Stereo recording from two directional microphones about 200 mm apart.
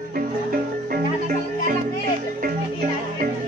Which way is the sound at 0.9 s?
45° right (ahead or behind).